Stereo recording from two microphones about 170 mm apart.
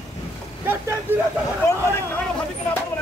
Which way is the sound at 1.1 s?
10° right (ahead or behind).